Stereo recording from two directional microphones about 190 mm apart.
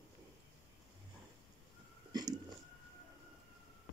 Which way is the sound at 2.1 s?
20° right (ahead or behind).